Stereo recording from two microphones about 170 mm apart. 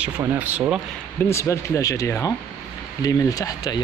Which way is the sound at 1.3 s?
15° left (ahead or behind).